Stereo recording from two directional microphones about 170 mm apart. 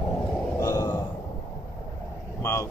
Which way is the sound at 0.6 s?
20° left (ahead or behind).